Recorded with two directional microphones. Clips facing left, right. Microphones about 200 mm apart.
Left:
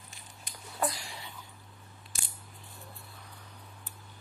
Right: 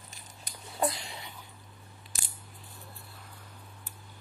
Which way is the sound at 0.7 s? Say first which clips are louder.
Right 3 dB; 20° right (ahead or behind).